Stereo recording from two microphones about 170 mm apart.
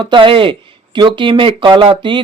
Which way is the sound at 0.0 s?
30° right (ahead or behind).